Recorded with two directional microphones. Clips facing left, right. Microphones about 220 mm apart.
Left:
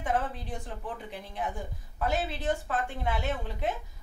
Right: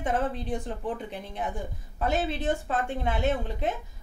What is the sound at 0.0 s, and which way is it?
A woman's voice, 20° right (ahead or behind).